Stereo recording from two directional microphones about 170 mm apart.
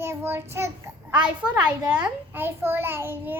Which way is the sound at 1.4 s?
5° right (ahead or behind).